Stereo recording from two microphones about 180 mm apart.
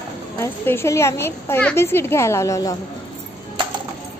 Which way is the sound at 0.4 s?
15° left (ahead or behind).